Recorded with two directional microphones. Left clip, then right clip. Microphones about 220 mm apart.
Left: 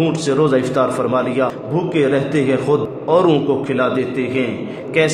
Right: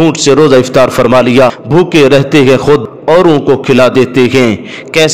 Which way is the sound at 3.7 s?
50° right (ahead or behind).